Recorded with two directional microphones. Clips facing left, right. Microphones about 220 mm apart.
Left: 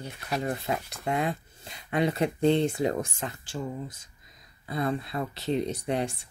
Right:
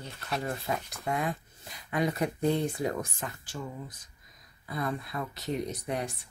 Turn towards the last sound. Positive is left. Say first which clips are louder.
# left 5 dB
turn(degrees=30)  # may be behind; listen again after turning